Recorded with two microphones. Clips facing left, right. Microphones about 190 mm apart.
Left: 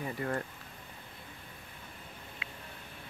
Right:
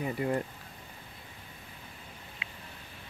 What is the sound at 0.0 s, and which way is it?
Speech, 15° right (ahead or behind).